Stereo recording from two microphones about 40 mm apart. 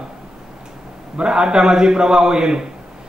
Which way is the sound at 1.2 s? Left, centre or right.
Right.